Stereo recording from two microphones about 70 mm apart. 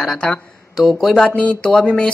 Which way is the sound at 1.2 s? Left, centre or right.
Centre.